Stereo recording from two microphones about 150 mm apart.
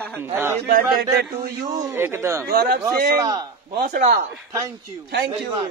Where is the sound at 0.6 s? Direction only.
60° right (ahead or behind).